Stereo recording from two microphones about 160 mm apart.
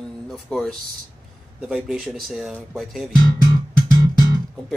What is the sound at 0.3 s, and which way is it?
Speech, centre (ahead or behind).